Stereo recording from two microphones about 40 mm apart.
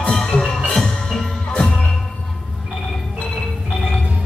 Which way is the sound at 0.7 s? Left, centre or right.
Centre.